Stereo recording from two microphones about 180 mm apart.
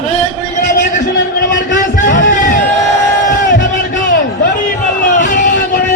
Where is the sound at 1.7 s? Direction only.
45° left (ahead or behind).